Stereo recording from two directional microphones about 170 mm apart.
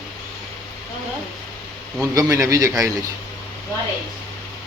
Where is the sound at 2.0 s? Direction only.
20° right (ahead or behind).